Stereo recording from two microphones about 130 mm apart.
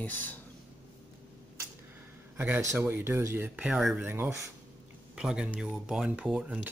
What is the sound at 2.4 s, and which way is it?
Speech, 15° right (ahead or behind).